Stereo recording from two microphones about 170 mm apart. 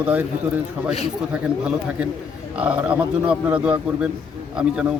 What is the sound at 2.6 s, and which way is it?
Speech, 5° right (ahead or behind).